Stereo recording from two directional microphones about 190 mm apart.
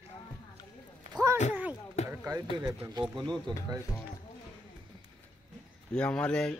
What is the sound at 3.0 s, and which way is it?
Speech, centre (ahead or behind).